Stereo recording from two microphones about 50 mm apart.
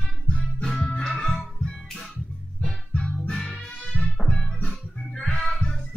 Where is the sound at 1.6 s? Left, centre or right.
Centre.